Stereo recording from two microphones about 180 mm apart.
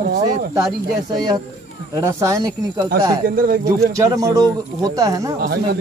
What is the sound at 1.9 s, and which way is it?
Speech, 15° right (ahead or behind).